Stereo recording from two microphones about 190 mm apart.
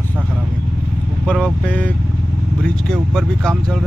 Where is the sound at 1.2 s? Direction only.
5° left (ahead or behind).